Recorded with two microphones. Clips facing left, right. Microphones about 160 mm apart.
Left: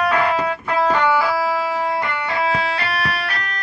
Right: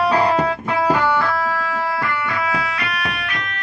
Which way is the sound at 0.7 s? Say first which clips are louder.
Left 2 dB; 5° right (ahead or behind).